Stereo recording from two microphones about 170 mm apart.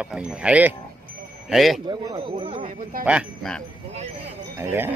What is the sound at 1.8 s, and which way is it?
Speech, 35° right (ahead or behind).